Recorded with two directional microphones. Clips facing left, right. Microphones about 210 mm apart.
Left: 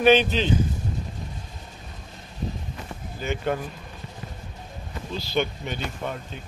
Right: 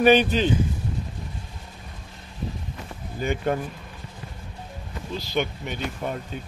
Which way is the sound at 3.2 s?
50° right (ahead or behind).